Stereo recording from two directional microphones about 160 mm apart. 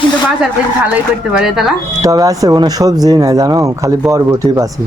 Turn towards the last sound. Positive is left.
turn(degrees=-20)  # may be behind; listen again after turning